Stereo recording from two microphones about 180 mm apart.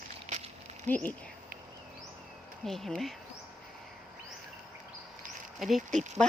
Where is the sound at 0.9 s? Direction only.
10° left (ahead or behind).